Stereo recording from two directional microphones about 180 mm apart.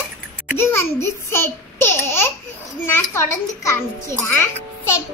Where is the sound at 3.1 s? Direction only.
15° left (ahead or behind).